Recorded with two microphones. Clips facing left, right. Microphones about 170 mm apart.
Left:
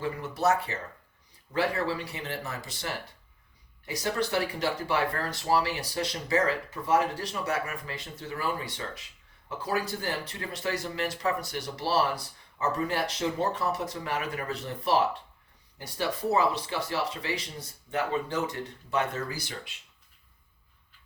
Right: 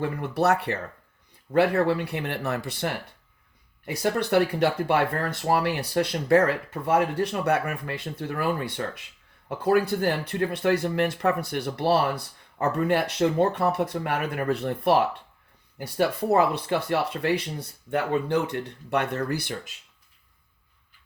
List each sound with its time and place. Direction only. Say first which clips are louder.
0.0 s speech: right 4 dB; 60° right (ahead or behind)